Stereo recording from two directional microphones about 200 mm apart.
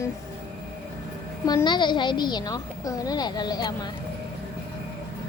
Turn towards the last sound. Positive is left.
turn(degrees=20)  # may be behind; listen again after turning